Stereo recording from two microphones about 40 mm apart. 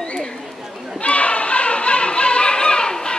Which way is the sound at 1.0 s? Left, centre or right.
Left.